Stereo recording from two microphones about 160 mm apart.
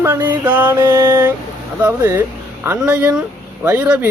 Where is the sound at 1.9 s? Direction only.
20° right (ahead or behind).